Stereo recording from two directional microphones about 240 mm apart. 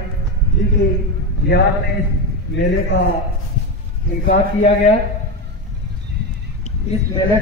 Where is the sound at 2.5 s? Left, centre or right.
Left.